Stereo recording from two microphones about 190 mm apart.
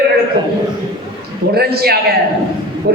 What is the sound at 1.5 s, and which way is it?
Speech, 55° right (ahead or behind).